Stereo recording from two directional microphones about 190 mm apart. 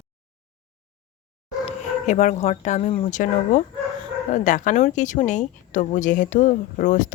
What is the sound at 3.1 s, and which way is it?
Speech, 40° left (ahead or behind).